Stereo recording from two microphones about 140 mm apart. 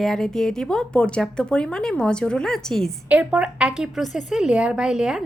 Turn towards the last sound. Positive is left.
turn(degrees=-5)  # may be behind; listen again after turning